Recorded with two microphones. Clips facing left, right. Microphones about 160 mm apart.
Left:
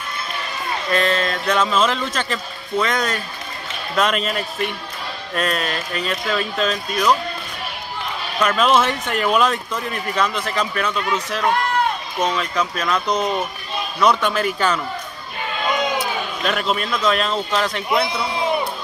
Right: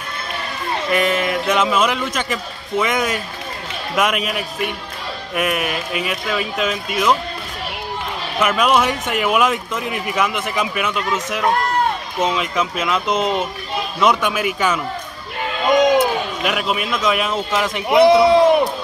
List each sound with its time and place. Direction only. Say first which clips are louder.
0.8 s a man's voice: right 1 dB; 15° right (ahead or behind)
8.5 s a man's voice: even; 10° right (ahead or behind)
16.4 s a man's voice: left 1 dB; 10° right (ahead or behind)
18.1 s a sound: right 11 dB; 80° right